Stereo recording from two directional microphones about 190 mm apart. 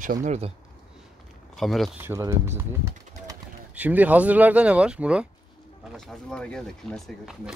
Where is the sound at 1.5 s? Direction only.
Centre (ahead or behind).